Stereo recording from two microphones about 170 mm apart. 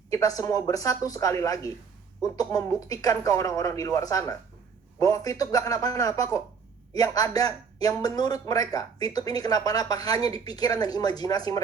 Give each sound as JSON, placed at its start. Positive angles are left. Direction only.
{"t": 0.1, "sound": "a man's voice", "side_deg": 20}